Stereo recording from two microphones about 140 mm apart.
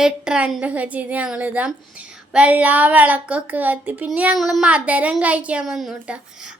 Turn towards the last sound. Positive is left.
turn(degrees=-5)  # may be behind; listen again after turning